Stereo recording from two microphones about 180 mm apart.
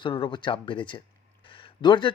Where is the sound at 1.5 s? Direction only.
30° left (ahead or behind).